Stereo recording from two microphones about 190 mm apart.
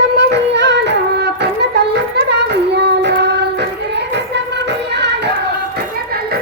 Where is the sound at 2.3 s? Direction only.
60° right (ahead or behind).